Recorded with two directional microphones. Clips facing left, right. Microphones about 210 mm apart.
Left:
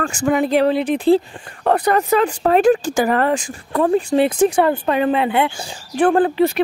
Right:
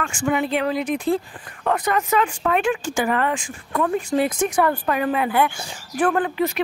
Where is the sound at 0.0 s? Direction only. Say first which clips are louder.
Left 5 dB; 40° left (ahead or behind).